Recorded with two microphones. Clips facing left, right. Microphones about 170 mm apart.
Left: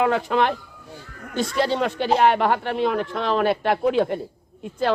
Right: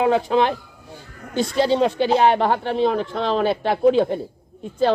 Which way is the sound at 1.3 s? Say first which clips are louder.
Right 3 dB; 35° right (ahead or behind).